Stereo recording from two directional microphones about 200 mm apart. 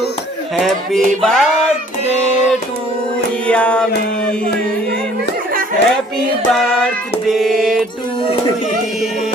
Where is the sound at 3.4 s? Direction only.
5° left (ahead or behind).